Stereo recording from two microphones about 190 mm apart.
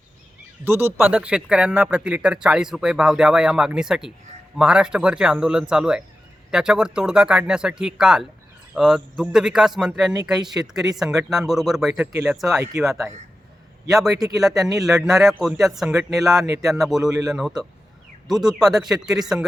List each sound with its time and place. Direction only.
0.6 s speech: 10° right (ahead or behind)
17.0 s speech: 20° right (ahead or behind)
17.3 s speech: centre (ahead or behind)